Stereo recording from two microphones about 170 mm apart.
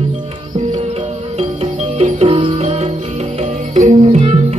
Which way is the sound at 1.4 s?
35° right (ahead or behind).